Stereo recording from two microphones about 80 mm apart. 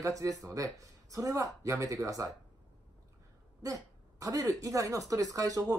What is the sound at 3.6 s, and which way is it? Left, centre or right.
Throat clearing, right.